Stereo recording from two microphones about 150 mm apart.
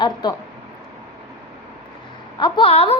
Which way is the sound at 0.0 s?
30° left (ahead or behind).